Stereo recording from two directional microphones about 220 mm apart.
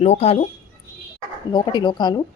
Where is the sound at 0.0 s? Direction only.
30° left (ahead or behind).